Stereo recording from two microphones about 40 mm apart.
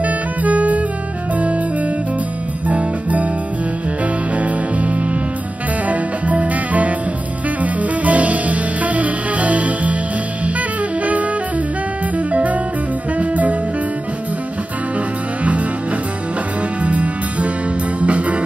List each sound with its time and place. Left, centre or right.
0.0 s music: right
2.7 s music: right
4.4 s music: right
12.3 s music: right
16.8 s music: right